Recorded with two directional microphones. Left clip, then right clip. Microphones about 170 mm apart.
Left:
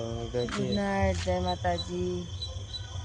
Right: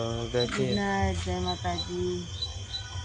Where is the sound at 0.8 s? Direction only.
35° left (ahead or behind).